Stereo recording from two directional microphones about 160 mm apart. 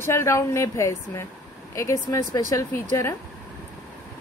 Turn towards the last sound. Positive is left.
turn(degrees=15)  # may be behind; listen again after turning